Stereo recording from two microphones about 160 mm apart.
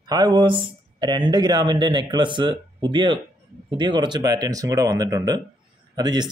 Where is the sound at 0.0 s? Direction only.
25° right (ahead or behind).